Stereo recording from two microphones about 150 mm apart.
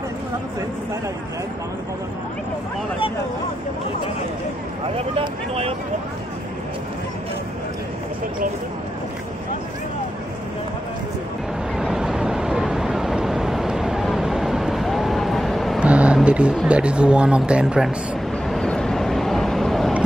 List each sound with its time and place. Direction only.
4.9 s speech: 40° right (ahead or behind)
11.7 s vehicle: 5° right (ahead or behind)
16.6 s speech: 5° right (ahead or behind)
18.5 s vehicle: 5° left (ahead or behind)